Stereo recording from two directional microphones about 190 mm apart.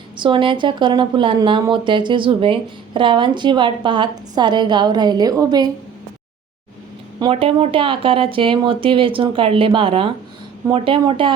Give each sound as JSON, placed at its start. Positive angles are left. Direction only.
{"t": 0.2, "sound": "speech", "side_deg": -25}
{"t": 7.2, "sound": "speech", "side_deg": -30}